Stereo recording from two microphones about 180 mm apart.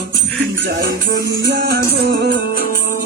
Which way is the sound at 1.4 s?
65° right (ahead or behind).